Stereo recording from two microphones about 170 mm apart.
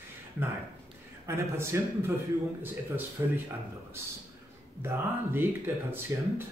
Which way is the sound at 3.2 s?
15° right (ahead or behind).